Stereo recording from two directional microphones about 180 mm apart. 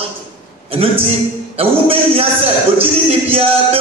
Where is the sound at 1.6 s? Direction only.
30° right (ahead or behind).